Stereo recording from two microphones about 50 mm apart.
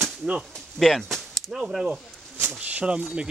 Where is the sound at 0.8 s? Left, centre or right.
Centre.